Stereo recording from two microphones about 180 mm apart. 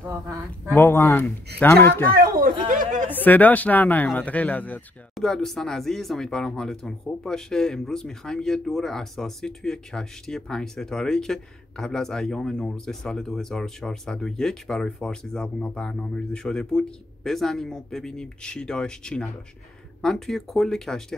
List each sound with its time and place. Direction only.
0.7 s speech: 10° left (ahead or behind)
2.1 s speech: 55° right (ahead or behind)
2.7 s chatter: 45° right (ahead or behind)
3.1 s speech: 10° left (ahead or behind)